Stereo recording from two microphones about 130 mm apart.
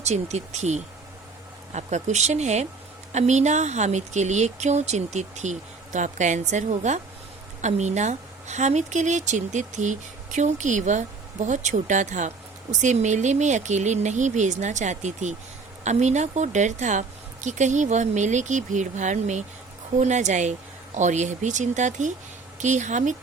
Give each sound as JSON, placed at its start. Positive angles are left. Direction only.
{"t": 0.0, "sound": "a woman's voice", "side_deg": -60}